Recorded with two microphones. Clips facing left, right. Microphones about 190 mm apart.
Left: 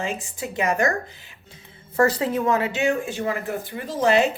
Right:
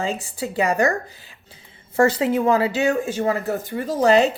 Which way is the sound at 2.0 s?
25° right (ahead or behind).